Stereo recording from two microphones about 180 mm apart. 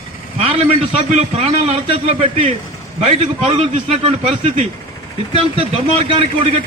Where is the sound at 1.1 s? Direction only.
35° right (ahead or behind).